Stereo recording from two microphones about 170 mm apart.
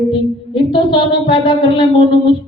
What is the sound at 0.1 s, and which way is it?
Music, 30° left (ahead or behind).